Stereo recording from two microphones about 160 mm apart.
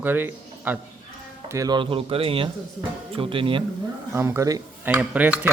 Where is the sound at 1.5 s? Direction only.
25° right (ahead or behind).